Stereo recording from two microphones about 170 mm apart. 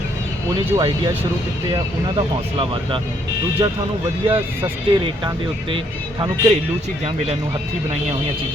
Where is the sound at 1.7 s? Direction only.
30° right (ahead or behind).